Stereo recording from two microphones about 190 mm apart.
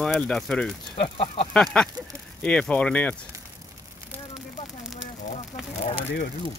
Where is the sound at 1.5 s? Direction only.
5° left (ahead or behind).